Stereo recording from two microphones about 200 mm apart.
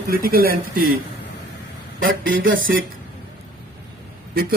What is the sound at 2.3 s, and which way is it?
Speech, 45° right (ahead or behind).